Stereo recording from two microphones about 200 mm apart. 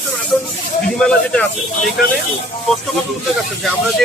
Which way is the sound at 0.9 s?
5° left (ahead or behind).